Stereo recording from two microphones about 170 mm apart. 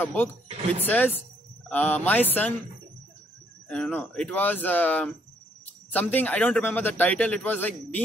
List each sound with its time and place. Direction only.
0.0 s speech: 10° left (ahead or behind)
0.5 s speech: 35° right (ahead or behind)
0.8 s speech: 10° left (ahead or behind)
3.6 s speech: 5° left (ahead or behind)